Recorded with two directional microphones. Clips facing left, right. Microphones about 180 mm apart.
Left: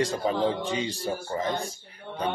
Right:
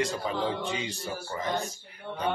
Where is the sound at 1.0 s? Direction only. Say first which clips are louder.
Left 4 dB; 35° left (ahead or behind).